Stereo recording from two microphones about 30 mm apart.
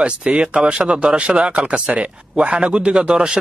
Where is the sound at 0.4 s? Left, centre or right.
Right.